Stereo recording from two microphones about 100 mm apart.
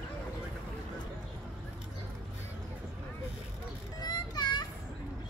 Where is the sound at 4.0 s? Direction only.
40° left (ahead or behind).